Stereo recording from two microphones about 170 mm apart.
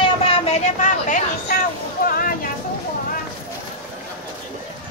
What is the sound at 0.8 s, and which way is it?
Speech, 50° left (ahead or behind).